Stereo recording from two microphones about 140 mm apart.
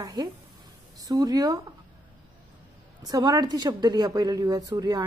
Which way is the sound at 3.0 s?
25° right (ahead or behind).